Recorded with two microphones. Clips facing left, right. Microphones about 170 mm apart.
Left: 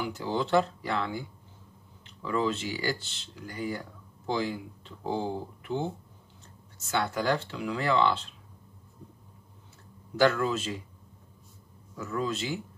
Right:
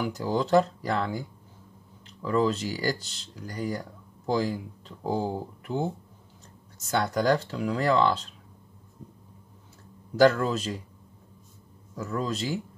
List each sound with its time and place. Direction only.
0.0 s speech: 40° right (ahead or behind)
10.1 s speech: 40° right (ahead or behind)
12.0 s speech: 35° right (ahead or behind)